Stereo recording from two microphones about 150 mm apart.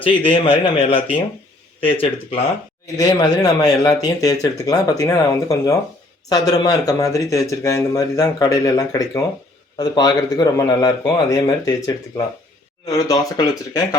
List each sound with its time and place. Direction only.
0.0 s speech: 35° left (ahead or behind)
3.0 s speech: 25° left (ahead or behind)